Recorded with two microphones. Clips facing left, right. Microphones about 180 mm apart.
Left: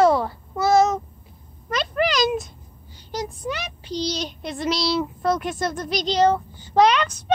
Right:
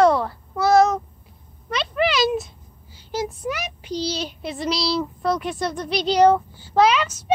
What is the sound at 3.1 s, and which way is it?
Child singing, 5° right (ahead or behind).